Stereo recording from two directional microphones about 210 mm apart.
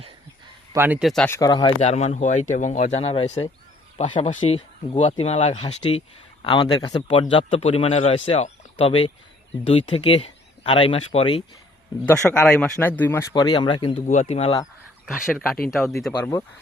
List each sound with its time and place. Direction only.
0.7 s speech: 10° right (ahead or behind); by 1.7 s 20° left (ahead or behind)
1.8 s a man's voice: 30° left (ahead or behind)
12.0 s a man's voice: 5° left (ahead or behind); by 14.6 s 30° left (ahead or behind)
15.7 s speech: centre (ahead or behind)